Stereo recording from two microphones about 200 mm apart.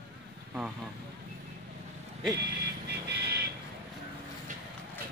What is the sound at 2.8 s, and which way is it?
Vehicle, 55° right (ahead or behind).